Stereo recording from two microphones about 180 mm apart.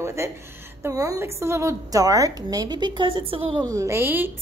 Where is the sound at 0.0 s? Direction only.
15° right (ahead or behind).